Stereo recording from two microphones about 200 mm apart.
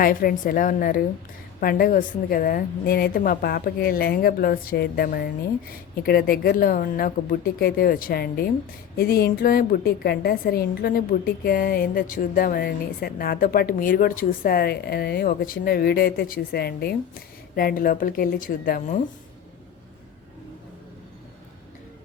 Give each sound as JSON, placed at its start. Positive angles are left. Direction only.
{"t": 0.0, "sound": "a woman's voice", "side_deg": 45}